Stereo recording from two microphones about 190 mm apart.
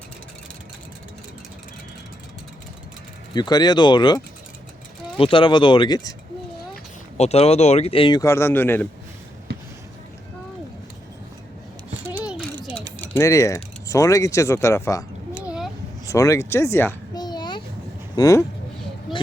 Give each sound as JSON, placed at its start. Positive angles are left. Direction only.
{"t": 3.3, "sound": "speech", "side_deg": 20}
{"t": 7.2, "sound": "speech", "side_deg": 35}
{"t": 12.0, "sound": "a sound", "side_deg": -5}
{"t": 13.0, "sound": "speech", "side_deg": 15}
{"t": 16.0, "sound": "a sound", "side_deg": 15}
{"t": 18.2, "sound": "speech", "side_deg": 15}